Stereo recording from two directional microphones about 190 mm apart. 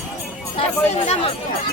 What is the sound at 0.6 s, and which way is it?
Speech, 35° left (ahead or behind).